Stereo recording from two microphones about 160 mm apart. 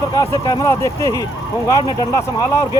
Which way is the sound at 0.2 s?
20° left (ahead or behind).